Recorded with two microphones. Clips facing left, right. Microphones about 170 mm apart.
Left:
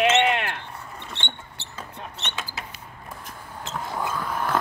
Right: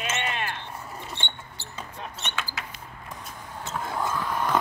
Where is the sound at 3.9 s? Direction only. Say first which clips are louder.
Even; 5° left (ahead or behind).